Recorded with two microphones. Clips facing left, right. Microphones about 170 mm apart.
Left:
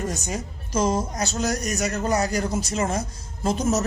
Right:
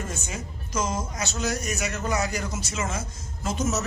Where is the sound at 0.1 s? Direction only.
40° left (ahead or behind).